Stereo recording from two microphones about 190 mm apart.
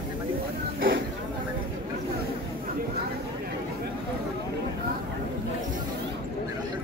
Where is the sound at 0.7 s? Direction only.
50° right (ahead or behind).